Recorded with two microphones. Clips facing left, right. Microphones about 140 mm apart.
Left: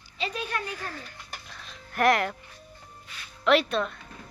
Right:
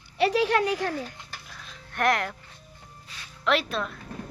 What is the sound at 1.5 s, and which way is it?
Music, centre (ahead or behind).